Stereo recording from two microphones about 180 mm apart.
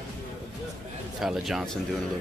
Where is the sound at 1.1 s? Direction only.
Centre (ahead or behind).